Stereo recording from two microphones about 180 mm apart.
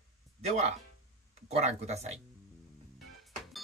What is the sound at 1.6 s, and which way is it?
Speech, 35° right (ahead or behind).